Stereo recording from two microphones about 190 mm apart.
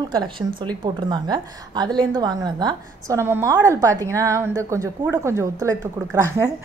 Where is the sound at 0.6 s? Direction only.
25° right (ahead or behind).